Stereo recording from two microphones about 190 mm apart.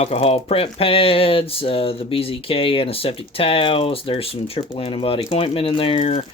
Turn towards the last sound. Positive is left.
turn(degrees=35)  # may be behind; listen again after turning